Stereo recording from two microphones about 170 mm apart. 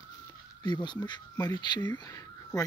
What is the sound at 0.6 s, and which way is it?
Speech, 25° left (ahead or behind).